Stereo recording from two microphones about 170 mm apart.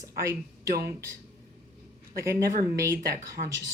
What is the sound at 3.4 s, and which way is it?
Speech, 45° right (ahead or behind).